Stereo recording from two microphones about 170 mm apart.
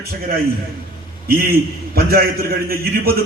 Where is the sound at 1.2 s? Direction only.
60° right (ahead or behind).